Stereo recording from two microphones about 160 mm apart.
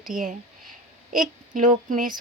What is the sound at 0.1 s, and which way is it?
Speech, 55° right (ahead or behind).